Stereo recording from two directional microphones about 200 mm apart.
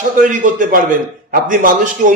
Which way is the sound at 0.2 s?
40° right (ahead or behind).